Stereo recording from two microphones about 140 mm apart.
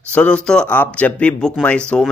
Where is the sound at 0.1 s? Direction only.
10° left (ahead or behind).